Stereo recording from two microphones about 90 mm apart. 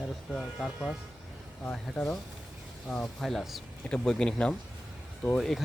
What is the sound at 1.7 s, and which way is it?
Speech, 5° left (ahead or behind).